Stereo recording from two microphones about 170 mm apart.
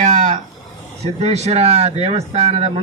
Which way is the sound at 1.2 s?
40° right (ahead or behind).